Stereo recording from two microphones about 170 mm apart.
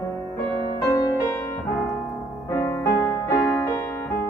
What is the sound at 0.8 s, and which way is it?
Music, 20° left (ahead or behind).